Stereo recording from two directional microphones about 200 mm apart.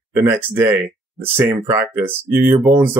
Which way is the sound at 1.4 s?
15° right (ahead or behind).